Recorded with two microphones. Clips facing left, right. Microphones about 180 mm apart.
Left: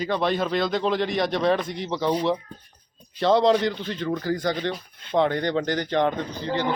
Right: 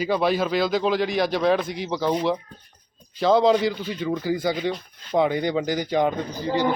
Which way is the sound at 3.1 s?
Centre (ahead or behind).